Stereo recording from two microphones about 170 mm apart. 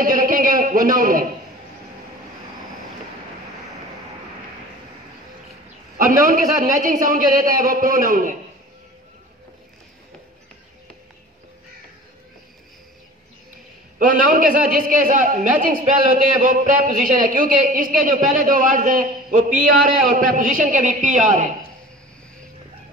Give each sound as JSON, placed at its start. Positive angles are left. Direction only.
{"t": 0.0, "sound": "a sound", "side_deg": -55}
{"t": 5.9, "sound": "a man's voice", "side_deg": -55}
{"t": 13.9, "sound": "a man's voice", "side_deg": -55}